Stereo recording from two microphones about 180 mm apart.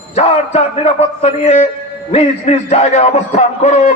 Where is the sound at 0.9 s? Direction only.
35° left (ahead or behind).